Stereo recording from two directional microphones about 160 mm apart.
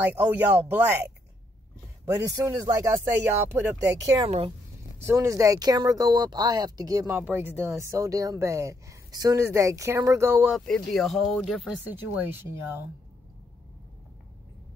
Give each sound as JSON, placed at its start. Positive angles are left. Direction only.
{"t": 0.0, "sound": "speech", "side_deg": -10}
{"t": 2.1, "sound": "speech", "side_deg": -20}
{"t": 10.5, "sound": "speech", "side_deg": 0}
{"t": 11.9, "sound": "speech", "side_deg": -15}